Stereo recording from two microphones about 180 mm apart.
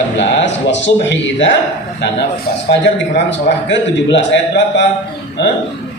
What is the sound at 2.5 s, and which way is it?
Speech, 60° left (ahead or behind).